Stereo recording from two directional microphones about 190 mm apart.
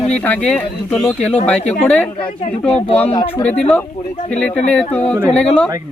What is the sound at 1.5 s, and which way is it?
Speech, 35° left (ahead or behind).